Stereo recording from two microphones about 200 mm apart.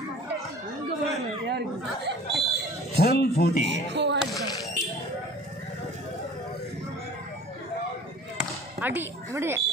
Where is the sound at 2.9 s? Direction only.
50° left (ahead or behind).